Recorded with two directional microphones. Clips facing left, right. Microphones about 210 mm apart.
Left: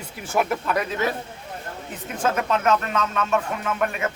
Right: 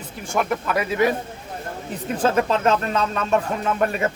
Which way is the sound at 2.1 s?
30° right (ahead or behind).